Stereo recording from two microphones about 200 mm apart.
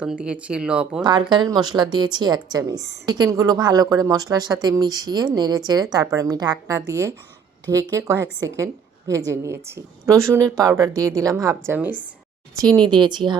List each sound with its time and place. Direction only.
0.0 s speech: 5° right (ahead or behind)
1.0 s a woman's voice: 20° right (ahead or behind)
12.5 s speech: 20° right (ahead or behind)